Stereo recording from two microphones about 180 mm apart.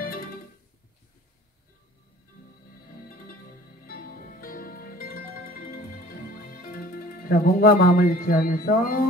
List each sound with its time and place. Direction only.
0.0 s music: 55° left (ahead or behind)
3.8 s music: 55° left (ahead or behind)